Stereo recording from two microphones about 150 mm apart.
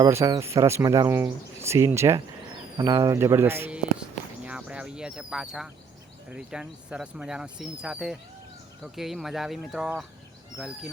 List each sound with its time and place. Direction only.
0.0 s speech: 20° right (ahead or behind)
4.4 s a sound: 10° right (ahead or behind)
6.3 s speech: 5° right (ahead or behind)